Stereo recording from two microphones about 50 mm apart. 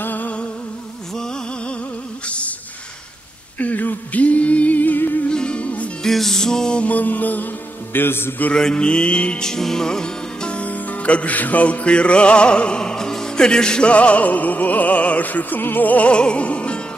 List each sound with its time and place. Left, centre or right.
0.0 s music: left
2.2 s a sound: left
3.5 s a sound: left
5.3 s music: centre
6.0 s music: centre
6.8 s music: left
7.9 s a sound: left
8.5 s music: centre; by 16.1 s left
16.1 s music: left